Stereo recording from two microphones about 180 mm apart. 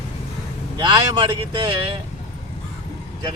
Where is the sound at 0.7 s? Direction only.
25° right (ahead or behind).